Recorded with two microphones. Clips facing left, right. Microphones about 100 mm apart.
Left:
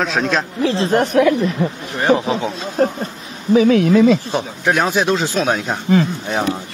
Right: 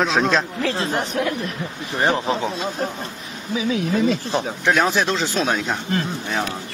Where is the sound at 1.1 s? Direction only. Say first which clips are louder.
Left 11 dB; 75° left (ahead or behind).